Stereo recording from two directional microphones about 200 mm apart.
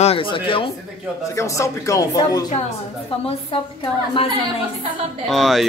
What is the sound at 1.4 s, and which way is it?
A woman's voice, 15° left (ahead or behind).